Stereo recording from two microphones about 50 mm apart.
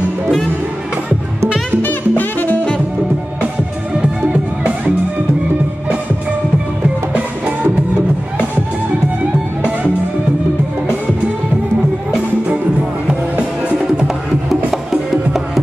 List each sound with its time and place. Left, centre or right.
1.8 s music: left
4.3 s music: right
13.0 s music: right
14.7 s music: centre